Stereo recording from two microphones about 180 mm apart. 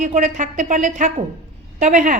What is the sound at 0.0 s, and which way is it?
A woman's voice, 40° right (ahead or behind).